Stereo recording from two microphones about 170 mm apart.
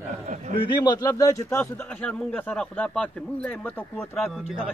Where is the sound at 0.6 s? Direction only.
25° left (ahead or behind); by 4.1 s 10° left (ahead or behind).